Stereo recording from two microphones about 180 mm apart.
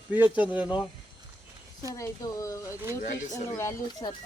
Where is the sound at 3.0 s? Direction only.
45° left (ahead or behind).